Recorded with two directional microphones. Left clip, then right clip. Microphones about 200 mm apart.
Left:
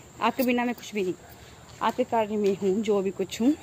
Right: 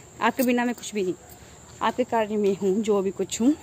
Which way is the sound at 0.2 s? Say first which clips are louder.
Right 2 dB; 15° right (ahead or behind).